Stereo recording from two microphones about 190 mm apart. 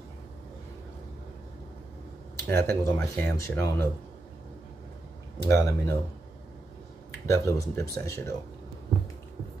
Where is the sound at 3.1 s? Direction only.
10° left (ahead or behind).